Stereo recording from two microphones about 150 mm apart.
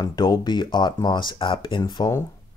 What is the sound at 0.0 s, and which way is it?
Speech, 30° left (ahead or behind).